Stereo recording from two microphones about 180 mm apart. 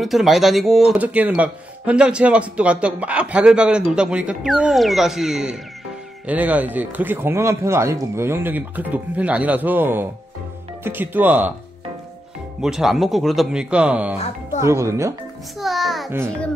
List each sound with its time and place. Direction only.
0.0 s speech: centre (ahead or behind)
12.6 s speech: centre (ahead or behind)
14.1 s speech: 35° left (ahead or behind)
14.6 s speech: 15° right (ahead or behind)
15.6 s music: centre (ahead or behind)